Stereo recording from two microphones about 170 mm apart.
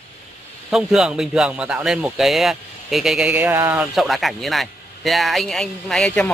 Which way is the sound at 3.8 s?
Centre (ahead or behind).